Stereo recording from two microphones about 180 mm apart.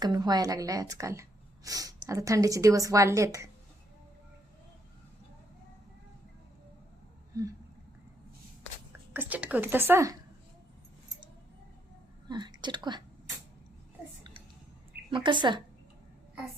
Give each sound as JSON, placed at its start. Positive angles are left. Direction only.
{"t": 0.0, "sound": "a woman's voice", "side_deg": -20}
{"t": 7.3, "sound": "a woman's voice", "side_deg": -20}
{"t": 9.1, "sound": "a woman's voice", "side_deg": -10}
{"t": 12.3, "sound": "a woman's voice", "side_deg": -25}
{"t": 15.1, "sound": "a woman's voice", "side_deg": -25}